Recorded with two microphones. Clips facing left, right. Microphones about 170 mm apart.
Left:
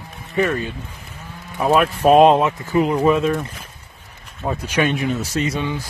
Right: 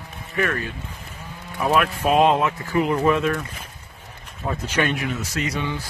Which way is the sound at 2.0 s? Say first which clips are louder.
Left 7 dB; 45° left (ahead or behind).